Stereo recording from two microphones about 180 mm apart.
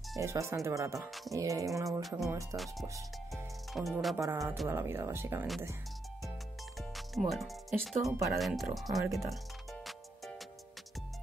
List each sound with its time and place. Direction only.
0.1 s speech: 15° right (ahead or behind)
1.9 s speech: centre (ahead or behind)
4.2 s speech: 15° right (ahead or behind)
6.8 s speech: centre (ahead or behind)
9.3 s music: centre (ahead or behind)